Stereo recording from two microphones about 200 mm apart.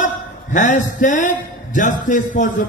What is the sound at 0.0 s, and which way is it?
A man's voice, 40° left (ahead or behind).